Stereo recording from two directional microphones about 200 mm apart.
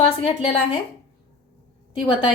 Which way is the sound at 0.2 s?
25° left (ahead or behind).